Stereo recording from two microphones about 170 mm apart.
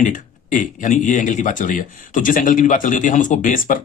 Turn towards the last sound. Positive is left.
turn(degrees=55)  # may be behind; listen again after turning